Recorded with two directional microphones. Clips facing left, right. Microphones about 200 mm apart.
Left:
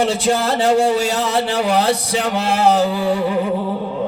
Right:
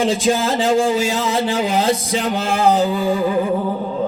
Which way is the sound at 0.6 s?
70° left (ahead or behind).